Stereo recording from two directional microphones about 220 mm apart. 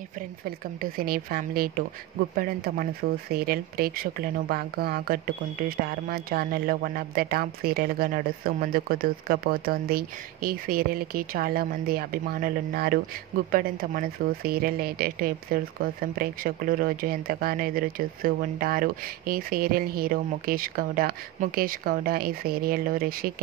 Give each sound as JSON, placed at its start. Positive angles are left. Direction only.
{"t": 0.7, "sound": "speech", "side_deg": -40}